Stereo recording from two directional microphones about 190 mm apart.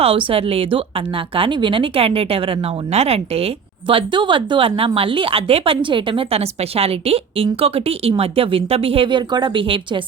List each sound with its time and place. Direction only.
0.3 s a woman's voice: 30° right (ahead or behind)